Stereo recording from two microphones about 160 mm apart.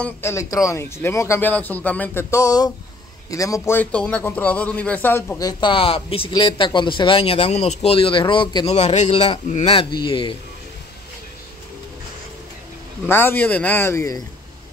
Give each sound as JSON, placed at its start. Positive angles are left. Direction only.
{"t": 0.0, "sound": "a man's voice", "side_deg": 15}
{"t": 5.4, "sound": "a man's voice", "side_deg": 25}
{"t": 8.7, "sound": "a man's voice", "side_deg": 45}
{"t": 13.0, "sound": "a man's voice", "side_deg": 15}